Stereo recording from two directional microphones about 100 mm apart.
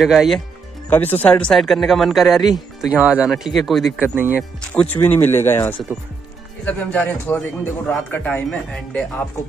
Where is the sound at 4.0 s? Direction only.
20° right (ahead or behind).